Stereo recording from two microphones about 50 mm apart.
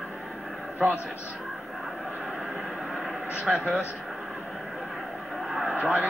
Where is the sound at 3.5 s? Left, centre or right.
Centre.